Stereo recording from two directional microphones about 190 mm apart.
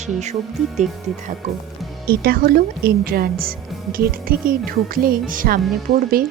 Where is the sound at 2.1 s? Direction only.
55° right (ahead or behind).